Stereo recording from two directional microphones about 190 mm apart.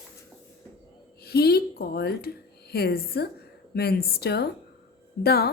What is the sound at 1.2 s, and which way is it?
Speech, 55° left (ahead or behind).